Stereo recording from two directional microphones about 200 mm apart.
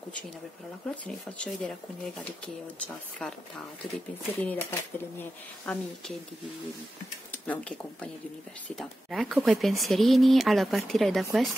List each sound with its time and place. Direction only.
0.8 s speech: 5° left (ahead or behind)
7.2 s speech: 10° left (ahead or behind)